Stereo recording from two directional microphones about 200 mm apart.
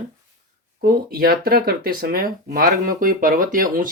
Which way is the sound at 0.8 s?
50° right (ahead or behind).